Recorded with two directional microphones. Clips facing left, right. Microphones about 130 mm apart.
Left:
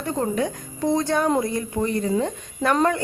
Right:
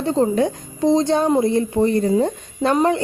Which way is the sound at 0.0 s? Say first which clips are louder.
Right 6 dB; 25° right (ahead or behind).